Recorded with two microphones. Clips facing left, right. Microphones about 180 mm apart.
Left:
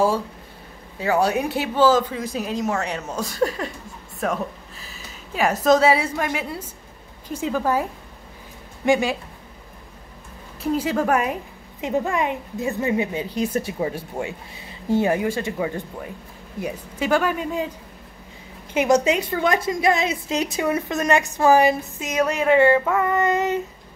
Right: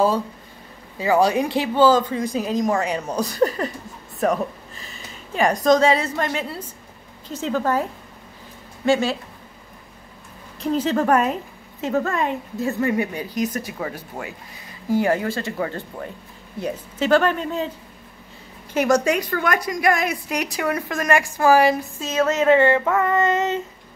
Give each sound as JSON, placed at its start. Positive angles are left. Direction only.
{"t": 0.9, "sound": "a woman's voice", "side_deg": 0}
{"t": 8.8, "sound": "a woman's voice", "side_deg": 15}
{"t": 10.6, "sound": "a woman's voice", "side_deg": 10}
{"t": 18.7, "sound": "a woman's voice", "side_deg": 20}